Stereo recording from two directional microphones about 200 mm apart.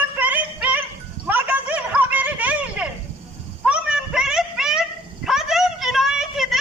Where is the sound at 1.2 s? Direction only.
10° right (ahead or behind).